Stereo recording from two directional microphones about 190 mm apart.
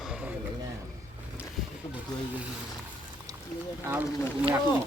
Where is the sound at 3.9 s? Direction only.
10° right (ahead or behind).